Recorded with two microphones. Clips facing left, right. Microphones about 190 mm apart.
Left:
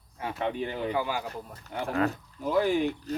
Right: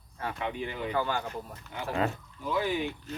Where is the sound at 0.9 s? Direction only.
10° left (ahead or behind).